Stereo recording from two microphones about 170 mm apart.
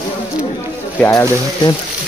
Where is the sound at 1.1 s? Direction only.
20° left (ahead or behind).